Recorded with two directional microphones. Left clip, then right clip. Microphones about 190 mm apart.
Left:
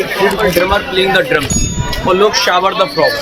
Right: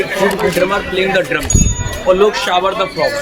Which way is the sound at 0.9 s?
50° left (ahead or behind).